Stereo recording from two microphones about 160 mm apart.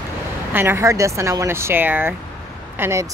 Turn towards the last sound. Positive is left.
turn(degrees=-15)  # may be behind; listen again after turning